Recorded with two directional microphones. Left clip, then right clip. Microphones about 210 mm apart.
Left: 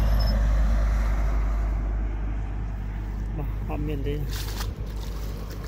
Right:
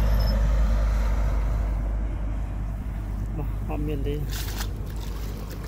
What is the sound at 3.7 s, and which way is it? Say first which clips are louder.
Speech: right 1 dB; centre (ahead or behind).